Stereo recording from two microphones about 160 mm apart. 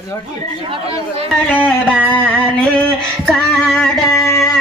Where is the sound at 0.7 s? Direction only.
35° right (ahead or behind).